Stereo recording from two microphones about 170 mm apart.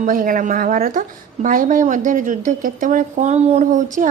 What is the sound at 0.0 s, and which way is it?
Speech, 55° right (ahead or behind).